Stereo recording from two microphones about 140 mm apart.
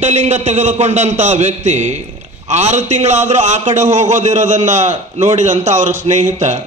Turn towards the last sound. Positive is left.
turn(degrees=-60)  # may be behind; listen again after turning